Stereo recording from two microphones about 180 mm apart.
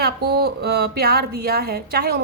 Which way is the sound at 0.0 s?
60° right (ahead or behind).